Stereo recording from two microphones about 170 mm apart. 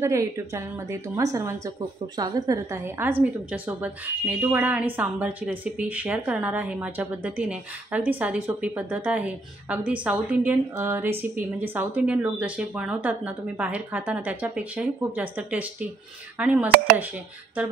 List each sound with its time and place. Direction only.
0.0 s a woman's voice: 15° right (ahead or behind)